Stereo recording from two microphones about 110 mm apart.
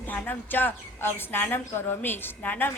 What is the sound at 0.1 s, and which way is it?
A woman's voice, 15° left (ahead or behind).